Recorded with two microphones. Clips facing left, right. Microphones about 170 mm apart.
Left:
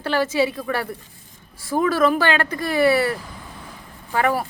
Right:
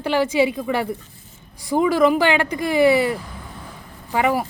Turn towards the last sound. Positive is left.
turn(degrees=-15)  # may be behind; listen again after turning